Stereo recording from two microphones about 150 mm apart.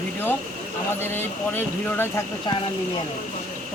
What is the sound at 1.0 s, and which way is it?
Speech, 15° left (ahead or behind).